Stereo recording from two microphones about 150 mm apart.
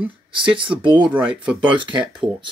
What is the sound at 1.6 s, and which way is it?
Speech, 35° right (ahead or behind).